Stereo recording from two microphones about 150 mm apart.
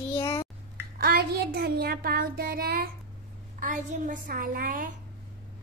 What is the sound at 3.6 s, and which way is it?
A woman's voice, 60° right (ahead or behind).